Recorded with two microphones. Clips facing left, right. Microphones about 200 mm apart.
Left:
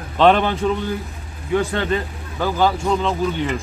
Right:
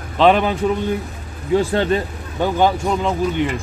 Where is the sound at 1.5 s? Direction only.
30° right (ahead or behind).